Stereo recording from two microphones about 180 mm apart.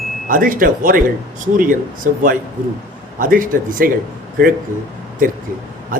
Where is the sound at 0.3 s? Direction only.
50° right (ahead or behind).